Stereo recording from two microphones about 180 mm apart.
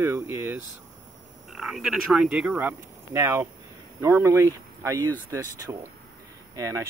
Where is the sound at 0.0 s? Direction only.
15° right (ahead or behind).